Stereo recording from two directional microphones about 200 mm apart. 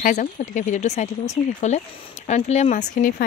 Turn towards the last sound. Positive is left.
turn(degrees=40)  # may be behind; listen again after turning